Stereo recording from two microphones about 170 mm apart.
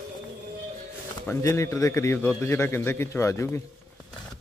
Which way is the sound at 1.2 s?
15° left (ahead or behind).